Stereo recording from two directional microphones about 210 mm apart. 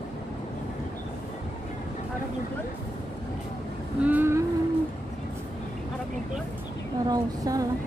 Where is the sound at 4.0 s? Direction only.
10° right (ahead or behind).